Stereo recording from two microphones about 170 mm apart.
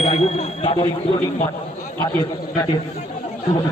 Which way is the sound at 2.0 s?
15° left (ahead or behind).